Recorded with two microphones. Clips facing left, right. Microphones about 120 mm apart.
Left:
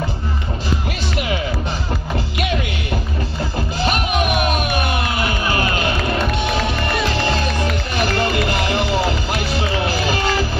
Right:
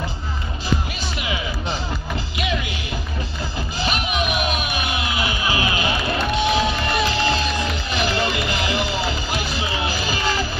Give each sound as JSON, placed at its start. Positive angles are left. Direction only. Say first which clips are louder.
{"t": 1.1, "sound": "music", "louder": "left 5 dB", "side_deg": 50}